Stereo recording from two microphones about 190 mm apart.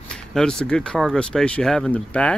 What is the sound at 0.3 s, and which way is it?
Speech, 5° left (ahead or behind).